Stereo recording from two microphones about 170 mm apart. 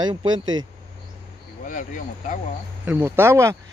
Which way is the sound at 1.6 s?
50° left (ahead or behind).